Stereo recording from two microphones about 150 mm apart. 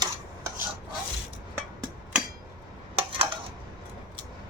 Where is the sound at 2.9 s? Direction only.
40° right (ahead or behind).